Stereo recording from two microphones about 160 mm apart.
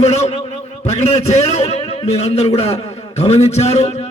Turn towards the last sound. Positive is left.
turn(degrees=45)  # may be behind; listen again after turning